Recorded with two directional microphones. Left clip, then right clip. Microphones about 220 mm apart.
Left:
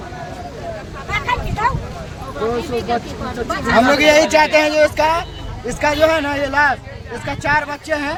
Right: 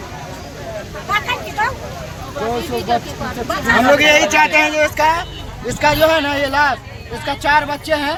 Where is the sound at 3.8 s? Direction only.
50° left (ahead or behind).